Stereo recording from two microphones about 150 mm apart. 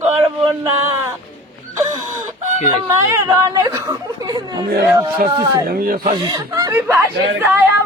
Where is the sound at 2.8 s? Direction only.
20° right (ahead or behind).